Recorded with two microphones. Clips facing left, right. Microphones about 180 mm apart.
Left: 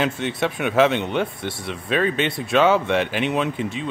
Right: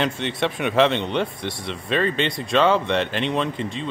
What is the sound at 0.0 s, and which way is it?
Speech, centre (ahead or behind).